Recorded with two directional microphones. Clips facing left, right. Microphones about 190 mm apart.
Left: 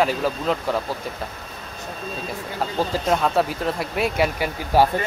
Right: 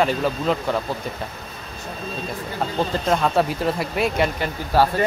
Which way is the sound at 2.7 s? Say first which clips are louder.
Even; 5° left (ahead or behind).